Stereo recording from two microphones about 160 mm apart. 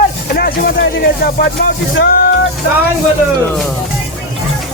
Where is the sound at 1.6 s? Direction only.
90° left.